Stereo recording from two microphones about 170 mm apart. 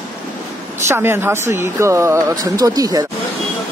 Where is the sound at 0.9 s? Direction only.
15° right (ahead or behind).